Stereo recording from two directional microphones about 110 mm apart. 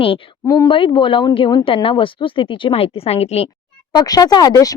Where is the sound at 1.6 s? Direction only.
55° left (ahead or behind).